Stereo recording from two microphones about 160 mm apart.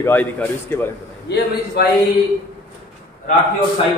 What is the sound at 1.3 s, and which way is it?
Speech, 90° left.